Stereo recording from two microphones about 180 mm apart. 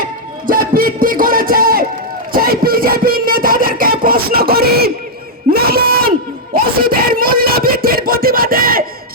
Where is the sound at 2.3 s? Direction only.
55° right (ahead or behind).